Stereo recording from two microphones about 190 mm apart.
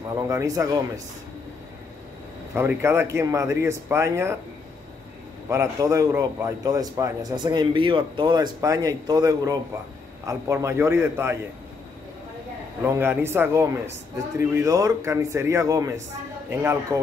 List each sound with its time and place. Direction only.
0.3 s speech: 15° right (ahead or behind)
2.5 s speech: 10° right (ahead or behind)
5.5 s a man's voice: 15° right (ahead or behind)
12.8 s speech: 10° right (ahead or behind)